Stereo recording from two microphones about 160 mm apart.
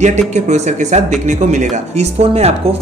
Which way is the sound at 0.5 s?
50° right (ahead or behind).